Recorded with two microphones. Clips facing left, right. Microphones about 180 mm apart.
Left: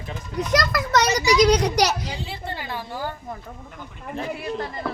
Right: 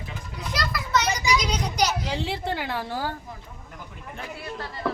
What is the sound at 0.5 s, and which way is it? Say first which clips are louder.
Children playing: left 5 dB; 90° left.